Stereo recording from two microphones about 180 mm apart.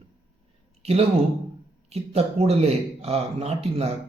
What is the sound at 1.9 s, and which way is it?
Speech, 35° right (ahead or behind).